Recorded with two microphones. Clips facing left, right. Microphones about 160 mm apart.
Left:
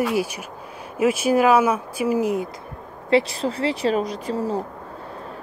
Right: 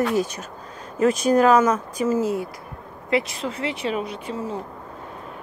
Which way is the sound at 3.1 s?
30° left (ahead or behind).